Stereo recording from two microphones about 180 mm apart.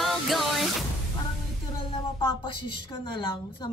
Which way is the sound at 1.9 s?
30° left (ahead or behind).